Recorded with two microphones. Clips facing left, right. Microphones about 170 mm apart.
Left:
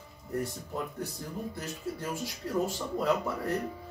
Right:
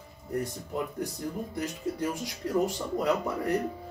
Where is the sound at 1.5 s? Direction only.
15° right (ahead or behind).